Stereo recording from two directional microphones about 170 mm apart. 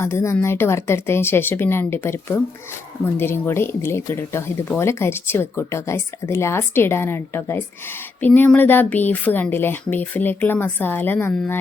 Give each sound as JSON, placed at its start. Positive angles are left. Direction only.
{"t": 0.0, "sound": "speech", "side_deg": 15}